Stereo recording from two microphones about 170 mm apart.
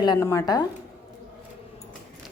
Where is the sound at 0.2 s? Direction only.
15° left (ahead or behind).